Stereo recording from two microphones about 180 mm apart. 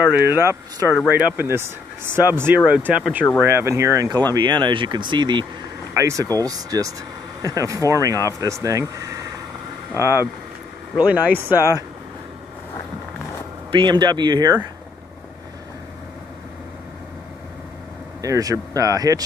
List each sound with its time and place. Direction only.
0.0 s speech: 10° right (ahead or behind)
9.9 s speech: 15° right (ahead or behind)
13.7 s speech: 25° right (ahead or behind)
18.2 s speech: 20° right (ahead or behind)